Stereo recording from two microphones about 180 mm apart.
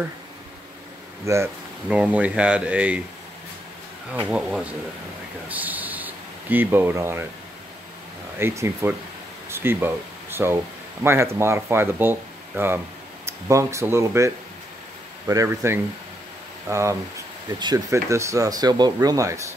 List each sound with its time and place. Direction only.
1.2 s speech: 15° right (ahead or behind)
4.1 s speech: 5° right (ahead or behind)
8.4 s speech: 15° right (ahead or behind)